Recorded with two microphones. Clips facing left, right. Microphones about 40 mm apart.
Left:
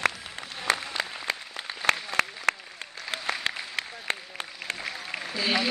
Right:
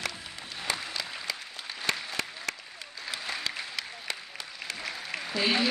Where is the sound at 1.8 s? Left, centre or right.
Left.